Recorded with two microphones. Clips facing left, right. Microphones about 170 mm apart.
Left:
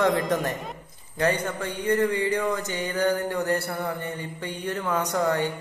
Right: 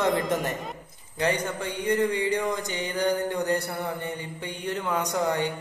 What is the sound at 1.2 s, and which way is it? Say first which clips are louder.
Mantra: left 1 dB; 10° right (ahead or behind).